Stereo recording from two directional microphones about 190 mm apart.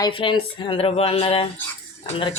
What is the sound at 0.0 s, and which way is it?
Speech, 25° left (ahead or behind).